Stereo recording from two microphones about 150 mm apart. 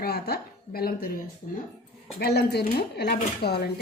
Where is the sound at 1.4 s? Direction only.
40° left (ahead or behind).